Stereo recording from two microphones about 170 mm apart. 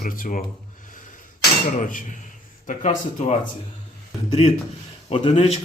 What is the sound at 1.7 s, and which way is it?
A man's voice, 50° left (ahead or behind).